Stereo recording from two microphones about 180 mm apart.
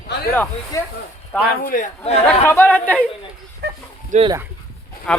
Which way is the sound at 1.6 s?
50° left (ahead or behind).